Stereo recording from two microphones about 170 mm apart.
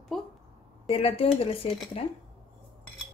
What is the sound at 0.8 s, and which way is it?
A woman's voice, 35° left (ahead or behind).